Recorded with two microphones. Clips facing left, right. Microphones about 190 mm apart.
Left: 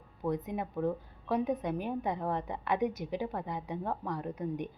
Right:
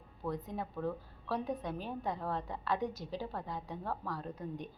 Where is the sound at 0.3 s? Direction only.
20° left (ahead or behind).